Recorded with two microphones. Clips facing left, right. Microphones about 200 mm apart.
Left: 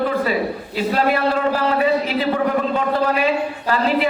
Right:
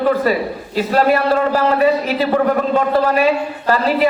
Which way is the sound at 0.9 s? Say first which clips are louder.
Right 5 dB; 45° right (ahead or behind).